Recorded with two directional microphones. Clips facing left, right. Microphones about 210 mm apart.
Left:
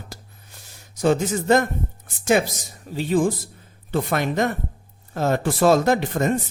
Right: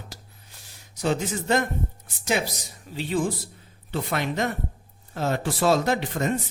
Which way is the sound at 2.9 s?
45° left (ahead or behind).